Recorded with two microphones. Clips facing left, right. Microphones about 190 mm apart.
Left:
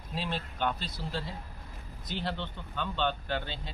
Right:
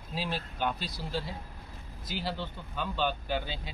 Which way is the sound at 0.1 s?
5° right (ahead or behind).